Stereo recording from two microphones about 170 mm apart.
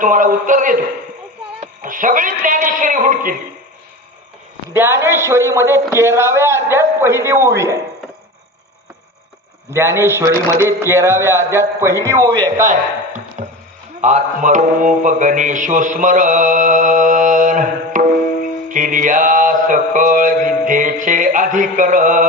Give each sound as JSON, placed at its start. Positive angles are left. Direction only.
{"t": 0.0, "sound": "a man's voice", "side_deg": -50}
{"t": 4.7, "sound": "a man's voice", "side_deg": -15}
{"t": 9.7, "sound": "a man's voice", "side_deg": -15}
{"t": 12.5, "sound": "a sound", "side_deg": -45}
{"t": 14.0, "sound": "a man's voice", "side_deg": -45}